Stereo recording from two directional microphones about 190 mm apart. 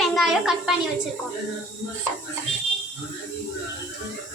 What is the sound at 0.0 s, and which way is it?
Speech, centre (ahead or behind).